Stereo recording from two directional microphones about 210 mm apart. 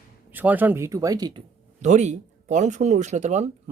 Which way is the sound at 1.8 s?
35° right (ahead or behind).